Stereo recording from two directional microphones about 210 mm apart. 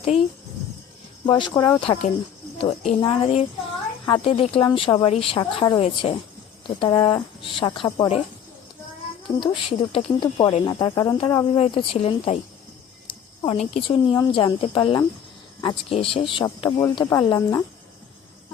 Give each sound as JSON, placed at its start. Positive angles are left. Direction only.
{"t": 1.2, "sound": "speech", "side_deg": 20}
{"t": 9.2, "sound": "speech", "side_deg": 25}
{"t": 11.5, "sound": "speech", "side_deg": 25}
{"t": 16.6, "sound": "speech", "side_deg": 10}